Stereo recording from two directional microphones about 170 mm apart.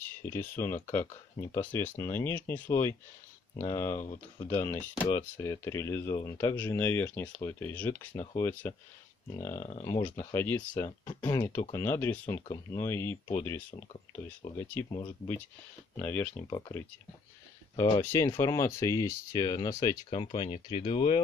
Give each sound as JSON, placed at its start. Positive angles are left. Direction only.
{"t": 0.2, "sound": "speech", "side_deg": 15}
{"t": 9.6, "sound": "speech", "side_deg": 40}
{"t": 9.8, "sound": "speech", "side_deg": 15}
{"t": 16.0, "sound": "speech", "side_deg": 10}
{"t": 16.4, "sound": "speech", "side_deg": 25}
{"t": 17.7, "sound": "speech", "side_deg": 20}
{"t": 20.2, "sound": "speech", "side_deg": 30}